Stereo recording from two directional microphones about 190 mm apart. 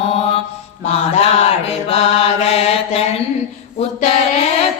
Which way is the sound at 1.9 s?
35° left (ahead or behind).